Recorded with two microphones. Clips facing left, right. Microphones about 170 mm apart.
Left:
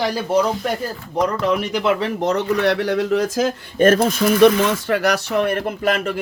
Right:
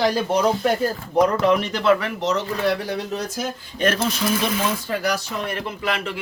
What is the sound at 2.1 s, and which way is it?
Speech, 55° left (ahead or behind).